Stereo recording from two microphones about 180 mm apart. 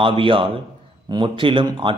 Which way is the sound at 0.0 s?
30° right (ahead or behind).